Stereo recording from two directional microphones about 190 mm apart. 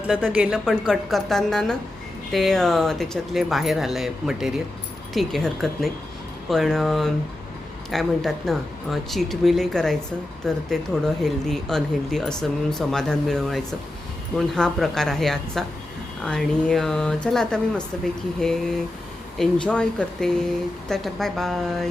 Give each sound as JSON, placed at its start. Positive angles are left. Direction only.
{"t": 0.1, "sound": "speech", "side_deg": -5}